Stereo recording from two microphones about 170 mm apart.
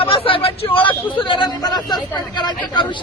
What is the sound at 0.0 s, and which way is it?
Speech, 35° left (ahead or behind).